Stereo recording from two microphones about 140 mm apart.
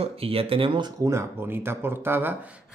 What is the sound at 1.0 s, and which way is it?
Speech, 20° right (ahead or behind).